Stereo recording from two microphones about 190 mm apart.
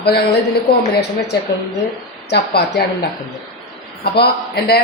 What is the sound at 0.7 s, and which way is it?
Speech, 55° left (ahead or behind).